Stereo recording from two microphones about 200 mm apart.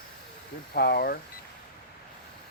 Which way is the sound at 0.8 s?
50° left (ahead or behind).